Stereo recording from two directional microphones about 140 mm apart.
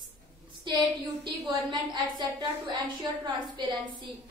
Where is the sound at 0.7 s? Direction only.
35° right (ahead or behind).